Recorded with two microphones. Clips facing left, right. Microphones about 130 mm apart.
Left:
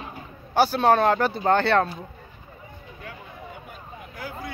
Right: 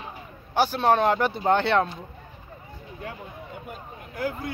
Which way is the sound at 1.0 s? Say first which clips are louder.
Left 1 dB; 5° right (ahead or behind).